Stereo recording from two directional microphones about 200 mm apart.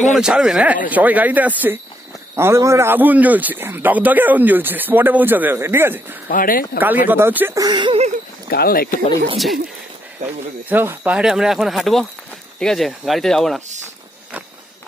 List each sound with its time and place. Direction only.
0.1 s a man's voice: centre (ahead or behind)
6.2 s speech: 45° left (ahead or behind)
6.8 s a man's voice: 10° right (ahead or behind); by 8.1 s 25° right (ahead or behind)
8.5 s speech: 50° left (ahead or behind)
10.7 s speech: 10° right (ahead or behind)